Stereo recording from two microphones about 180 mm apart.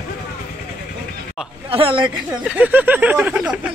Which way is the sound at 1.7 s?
30° right (ahead or behind).